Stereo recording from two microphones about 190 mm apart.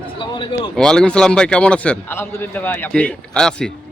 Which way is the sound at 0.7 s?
5° left (ahead or behind).